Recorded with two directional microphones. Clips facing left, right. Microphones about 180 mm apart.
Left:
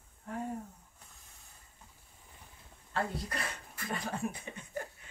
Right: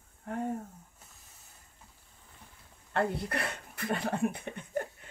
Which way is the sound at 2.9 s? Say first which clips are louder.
Right 5 dB; 60° right (ahead or behind).